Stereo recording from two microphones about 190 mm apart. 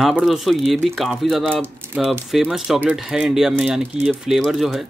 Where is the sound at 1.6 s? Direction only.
15° right (ahead or behind).